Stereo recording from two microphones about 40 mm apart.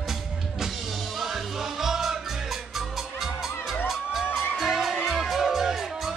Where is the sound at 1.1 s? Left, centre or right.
Centre.